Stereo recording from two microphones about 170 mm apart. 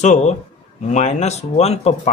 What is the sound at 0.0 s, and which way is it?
Speech, 45° left (ahead or behind).